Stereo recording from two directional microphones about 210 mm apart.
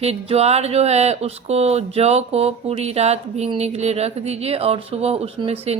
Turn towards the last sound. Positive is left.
turn(degrees=-30)  # may be behind; listen again after turning